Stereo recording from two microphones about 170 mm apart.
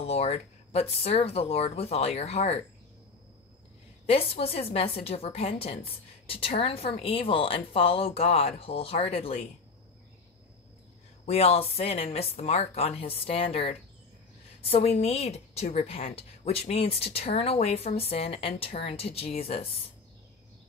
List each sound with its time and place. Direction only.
0.0 s a woman's voice: 35° left (ahead or behind)
4.0 s a woman's voice: 35° left (ahead or behind)
11.2 s a woman's voice: 35° left (ahead or behind)